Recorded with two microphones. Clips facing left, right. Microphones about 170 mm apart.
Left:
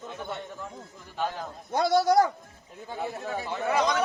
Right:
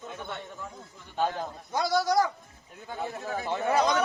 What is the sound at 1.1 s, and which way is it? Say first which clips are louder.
Speech: right 3 dB; 35° right (ahead or behind).